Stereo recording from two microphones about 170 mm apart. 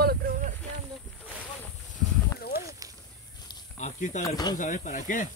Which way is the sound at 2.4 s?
65° left (ahead or behind).